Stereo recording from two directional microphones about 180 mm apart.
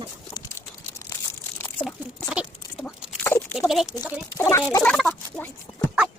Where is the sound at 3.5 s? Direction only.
Centre (ahead or behind).